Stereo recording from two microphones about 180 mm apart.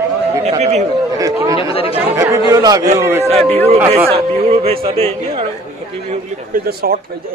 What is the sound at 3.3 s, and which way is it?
Speech, 35° right (ahead or behind).